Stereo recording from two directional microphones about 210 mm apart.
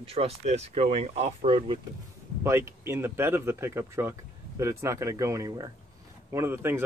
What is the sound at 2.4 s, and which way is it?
Speech, 10° right (ahead or behind).